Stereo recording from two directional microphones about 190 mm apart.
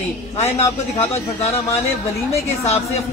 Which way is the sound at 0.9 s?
35° left (ahead or behind).